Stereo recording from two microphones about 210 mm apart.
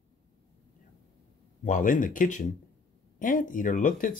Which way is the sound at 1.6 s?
40° left (ahead or behind).